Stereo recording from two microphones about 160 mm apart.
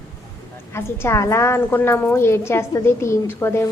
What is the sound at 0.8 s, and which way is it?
A woman's voice, 15° left (ahead or behind).